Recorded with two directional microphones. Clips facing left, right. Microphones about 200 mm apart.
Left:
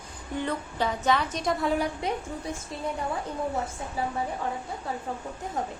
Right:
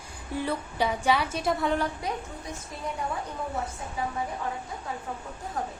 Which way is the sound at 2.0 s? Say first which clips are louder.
Left 3 dB; 25° left (ahead or behind).